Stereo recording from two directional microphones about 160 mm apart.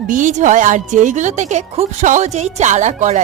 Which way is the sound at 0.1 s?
55° right (ahead or behind).